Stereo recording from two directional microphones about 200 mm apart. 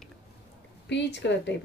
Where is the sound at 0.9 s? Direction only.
60° left (ahead or behind).